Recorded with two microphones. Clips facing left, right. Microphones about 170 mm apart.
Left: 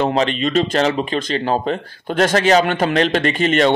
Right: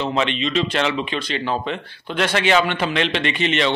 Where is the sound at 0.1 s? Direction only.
40° left (ahead or behind).